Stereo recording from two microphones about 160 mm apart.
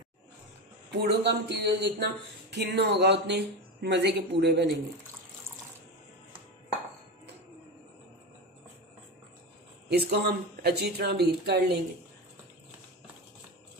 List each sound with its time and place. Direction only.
0.9 s speech: 90° right
9.8 s speech: 90° right